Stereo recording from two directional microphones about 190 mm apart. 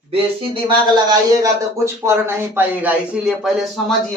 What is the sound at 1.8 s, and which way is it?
Speech, 15° right (ahead or behind).